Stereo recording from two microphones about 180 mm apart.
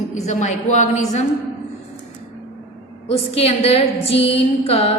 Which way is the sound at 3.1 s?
35° left (ahead or behind).